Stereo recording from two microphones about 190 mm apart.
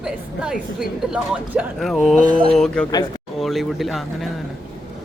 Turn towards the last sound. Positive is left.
turn(degrees=0)  # may be behind; listen again after turning